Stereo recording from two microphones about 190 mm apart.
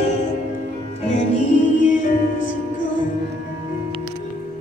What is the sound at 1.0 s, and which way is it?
Music, 40° left (ahead or behind).